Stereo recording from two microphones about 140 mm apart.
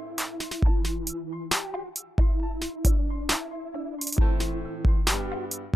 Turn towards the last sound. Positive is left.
turn(degrees=0)  # may be behind; listen again after turning